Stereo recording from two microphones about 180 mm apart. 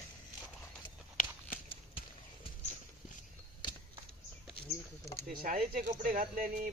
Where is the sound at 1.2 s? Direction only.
50° left (ahead or behind).